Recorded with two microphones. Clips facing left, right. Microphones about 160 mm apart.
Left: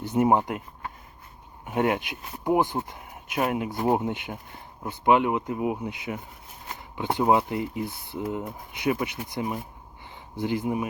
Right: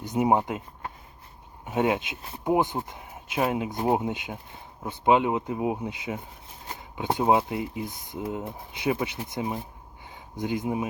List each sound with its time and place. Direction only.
0.0 s speech: 15° right (ahead or behind)
1.6 s speech: 20° right (ahead or behind)